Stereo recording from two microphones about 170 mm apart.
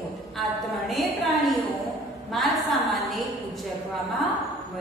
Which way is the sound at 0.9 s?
Centre (ahead or behind).